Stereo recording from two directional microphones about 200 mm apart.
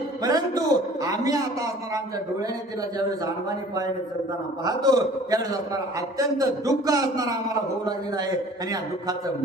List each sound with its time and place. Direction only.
0.2 s music: 20° right (ahead or behind)
1.0 s a man's voice: 15° right (ahead or behind)
4.6 s a man's voice: 20° right (ahead or behind)